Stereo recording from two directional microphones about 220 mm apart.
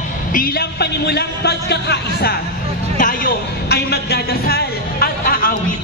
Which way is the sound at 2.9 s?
40° left (ahead or behind).